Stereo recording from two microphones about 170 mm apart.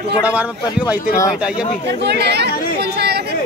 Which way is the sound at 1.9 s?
75° right (ahead or behind).